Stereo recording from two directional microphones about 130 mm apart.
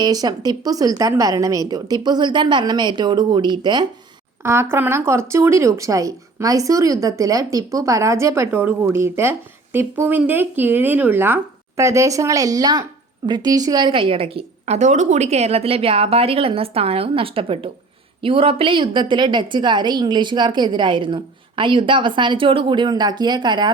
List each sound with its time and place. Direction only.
0.0 s a woman's voice: 30° right (ahead or behind)
4.4 s a woman's voice: 20° right (ahead or behind); by 23.7 s 35° right (ahead or behind)